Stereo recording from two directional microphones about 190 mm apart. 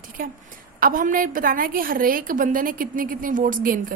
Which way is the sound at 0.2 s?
45° right (ahead or behind).